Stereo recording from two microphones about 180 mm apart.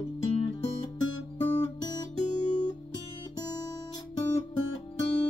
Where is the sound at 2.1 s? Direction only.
40° left (ahead or behind).